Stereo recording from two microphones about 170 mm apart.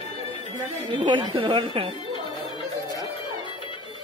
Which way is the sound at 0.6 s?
40° right (ahead or behind).